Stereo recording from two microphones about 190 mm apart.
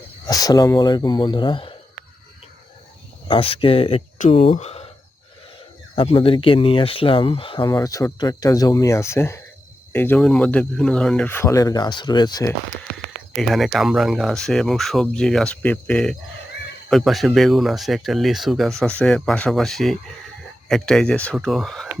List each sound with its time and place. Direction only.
0.3 s speech: 20° left (ahead or behind)
3.2 s speech: 30° left (ahead or behind)
6.0 s speech: 30° left (ahead or behind)
13.3 s speech: centre (ahead or behind)